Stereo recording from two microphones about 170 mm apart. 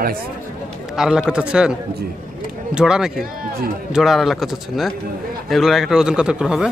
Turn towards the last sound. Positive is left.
turn(degrees=-5)  # may be behind; listen again after turning